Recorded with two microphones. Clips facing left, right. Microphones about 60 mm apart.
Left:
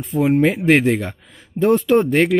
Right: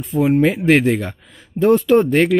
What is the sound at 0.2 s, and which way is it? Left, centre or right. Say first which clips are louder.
Speech: right 1 dB; centre.